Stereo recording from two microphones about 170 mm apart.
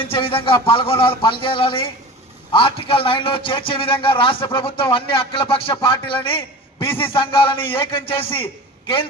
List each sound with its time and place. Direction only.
0.0 s a man's voice: 30° left (ahead or behind)